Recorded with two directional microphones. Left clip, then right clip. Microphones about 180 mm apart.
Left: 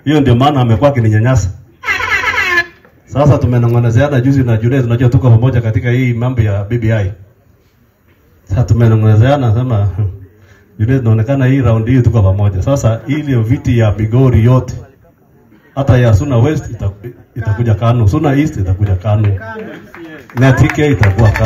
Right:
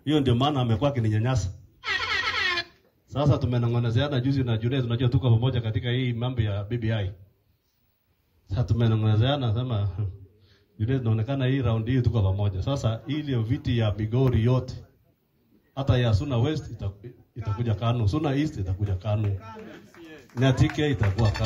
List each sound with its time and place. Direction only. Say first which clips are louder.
0.0 s a man's voice: left 13 dB; 15° left (ahead or behind)
1.9 s a sound: left 13 dB; 20° left (ahead or behind)
3.1 s a man's voice: left 14 dB; 25° left (ahead or behind)
8.5 s a man's voice: left 14 dB; 20° left (ahead or behind)
15.7 s a man's voice: left 14 dB; 25° left (ahead or behind)
20.3 s a man's voice: left 13 dB; 25° left (ahead or behind)